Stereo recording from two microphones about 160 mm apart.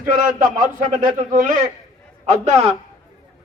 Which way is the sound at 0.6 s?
55° right (ahead or behind).